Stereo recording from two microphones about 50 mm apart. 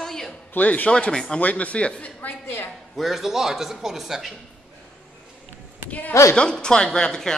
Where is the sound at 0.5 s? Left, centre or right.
Left.